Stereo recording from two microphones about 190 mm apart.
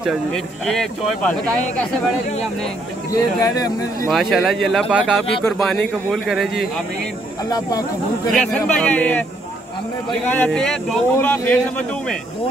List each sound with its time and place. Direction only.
0.7 s speech: centre (ahead or behind)
3.1 s speech: 20° left (ahead or behind)
4.1 s speech: centre (ahead or behind)
7.4 s speech: 20° left (ahead or behind)
8.3 s speech: centre (ahead or behind)
10.2 s speech: 10° left (ahead or behind)